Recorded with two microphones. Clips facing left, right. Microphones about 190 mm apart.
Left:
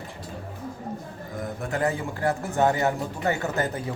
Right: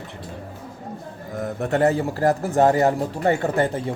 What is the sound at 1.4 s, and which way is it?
A man's voice, 40° right (ahead or behind).